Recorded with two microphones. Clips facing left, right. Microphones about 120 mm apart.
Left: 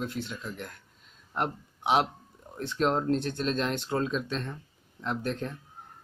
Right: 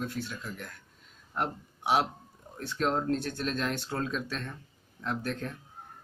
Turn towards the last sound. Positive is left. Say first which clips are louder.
# left 2 dB
turn(degrees=25)  # may be behind; listen again after turning